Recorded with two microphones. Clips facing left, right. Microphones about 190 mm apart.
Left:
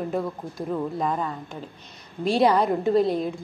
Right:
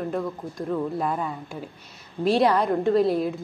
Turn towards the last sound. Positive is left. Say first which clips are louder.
# right 1 dB
turn(degrees=-5)  # may be behind; listen again after turning